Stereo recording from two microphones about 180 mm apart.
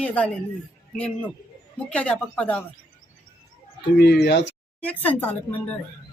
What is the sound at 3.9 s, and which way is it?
Speech, 70° left (ahead or behind).